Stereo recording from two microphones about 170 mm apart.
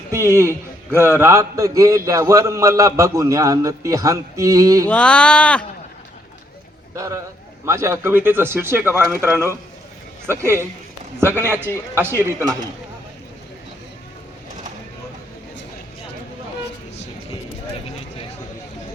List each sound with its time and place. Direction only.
0.1 s a man's voice: 15° right (ahead or behind)
4.9 s speech: 5° left (ahead or behind)
6.9 s speech: 20° right (ahead or behind)